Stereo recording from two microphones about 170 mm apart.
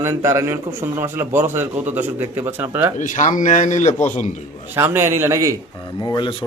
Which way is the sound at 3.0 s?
50° left (ahead or behind).